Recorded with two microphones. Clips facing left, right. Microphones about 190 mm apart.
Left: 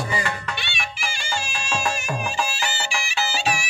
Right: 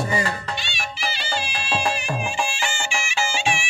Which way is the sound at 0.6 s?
55° left (ahead or behind).